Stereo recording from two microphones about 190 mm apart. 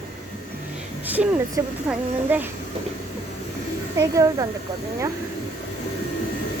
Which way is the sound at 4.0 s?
15° right (ahead or behind).